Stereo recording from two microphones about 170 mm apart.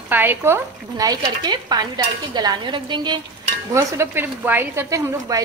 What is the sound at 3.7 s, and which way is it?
Speech, 15° right (ahead or behind).